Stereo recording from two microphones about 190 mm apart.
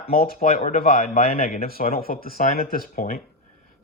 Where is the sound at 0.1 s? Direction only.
50° left (ahead or behind).